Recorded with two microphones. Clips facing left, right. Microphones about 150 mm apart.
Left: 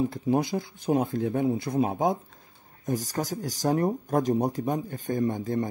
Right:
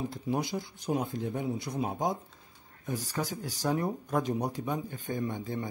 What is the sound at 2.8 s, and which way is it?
Speech, 40° left (ahead or behind).